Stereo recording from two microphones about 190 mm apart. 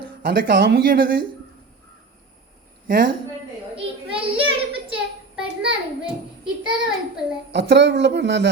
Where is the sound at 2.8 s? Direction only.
50° right (ahead or behind).